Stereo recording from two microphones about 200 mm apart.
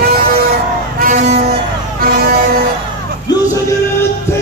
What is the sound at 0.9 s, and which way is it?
Vehicle, 40° right (ahead or behind).